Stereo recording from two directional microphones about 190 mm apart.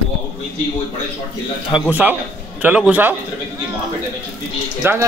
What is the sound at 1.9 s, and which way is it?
Speech, 10° right (ahead or behind).